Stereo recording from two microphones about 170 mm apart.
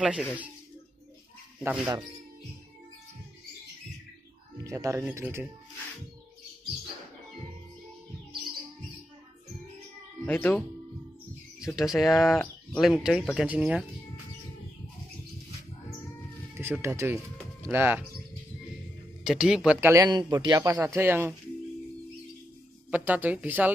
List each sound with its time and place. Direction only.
0.0 s a man's voice: 5° right (ahead or behind)
1.6 s a man's voice: 10° right (ahead or behind)
4.6 s a man's voice: 15° right (ahead or behind)
10.2 s speech: 15° left (ahead or behind)
11.6 s speech: 5° right (ahead or behind)
16.5 s a man's voice: 15° right (ahead or behind)
19.2 s speech: 5° right (ahead or behind)
19.9 s a man's voice: 20° right (ahead or behind)
22.8 s a man's voice: 10° right (ahead or behind)